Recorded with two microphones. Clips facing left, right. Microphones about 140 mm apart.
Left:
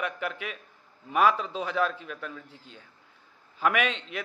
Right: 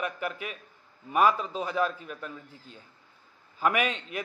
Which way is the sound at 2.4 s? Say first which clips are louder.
Even; 40° right (ahead or behind).